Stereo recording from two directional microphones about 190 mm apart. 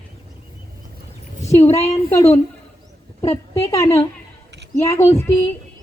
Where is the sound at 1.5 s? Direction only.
35° left (ahead or behind).